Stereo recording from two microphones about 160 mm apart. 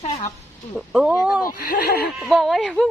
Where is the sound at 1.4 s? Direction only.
70° left (ahead or behind).